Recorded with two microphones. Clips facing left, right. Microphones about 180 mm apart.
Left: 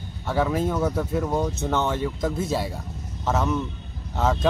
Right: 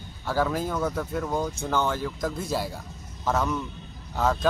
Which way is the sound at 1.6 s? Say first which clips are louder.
Left 2 dB; 25° left (ahead or behind).